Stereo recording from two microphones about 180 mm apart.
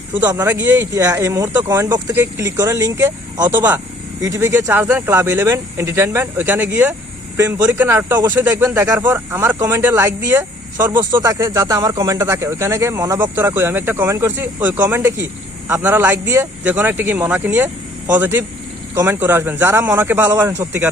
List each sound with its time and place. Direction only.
0.3 s speech: 10° right (ahead or behind)
10.9 s speech: 20° right (ahead or behind)